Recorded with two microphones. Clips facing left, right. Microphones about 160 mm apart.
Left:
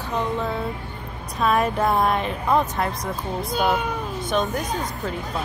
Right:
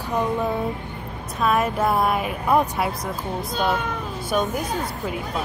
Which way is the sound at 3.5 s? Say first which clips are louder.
Left 2 dB; 5° left (ahead or behind).